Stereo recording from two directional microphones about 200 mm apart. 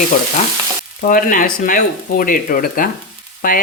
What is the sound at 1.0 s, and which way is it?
Speech, 45° left (ahead or behind).